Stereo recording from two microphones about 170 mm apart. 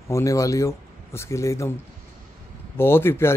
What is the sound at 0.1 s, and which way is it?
Speech, 20° left (ahead or behind).